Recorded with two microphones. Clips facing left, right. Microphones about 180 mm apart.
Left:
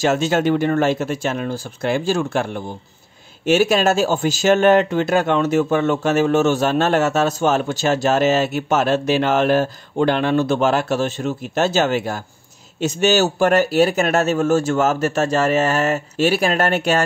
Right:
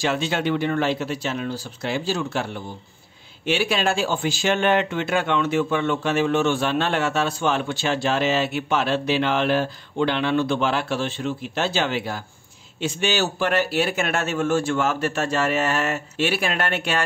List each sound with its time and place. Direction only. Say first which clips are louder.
0.0 s speech: left 6 dB; 45° left (ahead or behind)